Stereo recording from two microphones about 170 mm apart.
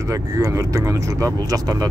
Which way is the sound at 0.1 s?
20° right (ahead or behind).